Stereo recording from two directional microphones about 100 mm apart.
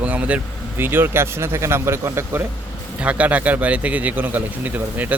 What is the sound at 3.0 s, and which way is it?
Speech, 15° right (ahead or behind).